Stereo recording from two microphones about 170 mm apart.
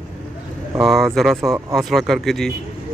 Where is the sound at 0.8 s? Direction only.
Centre (ahead or behind).